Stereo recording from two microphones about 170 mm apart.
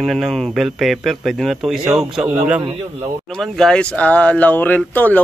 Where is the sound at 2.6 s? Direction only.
35° right (ahead or behind).